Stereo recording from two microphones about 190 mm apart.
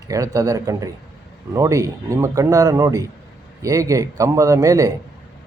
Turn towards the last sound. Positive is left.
turn(degrees=-20)  # may be behind; listen again after turning